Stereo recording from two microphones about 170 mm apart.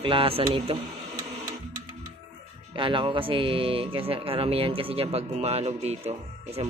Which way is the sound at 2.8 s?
30° right (ahead or behind).